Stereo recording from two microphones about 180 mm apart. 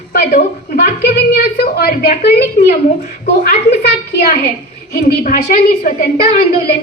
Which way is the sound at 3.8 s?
60° left (ahead or behind).